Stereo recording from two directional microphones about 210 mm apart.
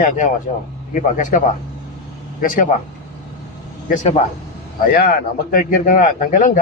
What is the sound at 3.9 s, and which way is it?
A man's voice, 35° left (ahead or behind).